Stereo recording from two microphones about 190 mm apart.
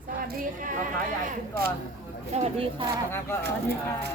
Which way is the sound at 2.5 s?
25° right (ahead or behind).